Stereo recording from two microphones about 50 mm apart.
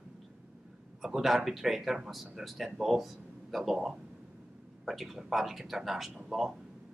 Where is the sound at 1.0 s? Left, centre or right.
Centre.